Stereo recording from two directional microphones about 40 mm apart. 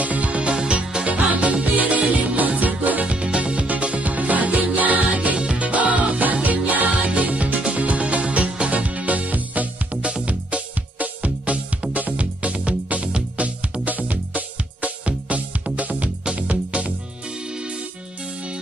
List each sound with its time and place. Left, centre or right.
0.0 s music: right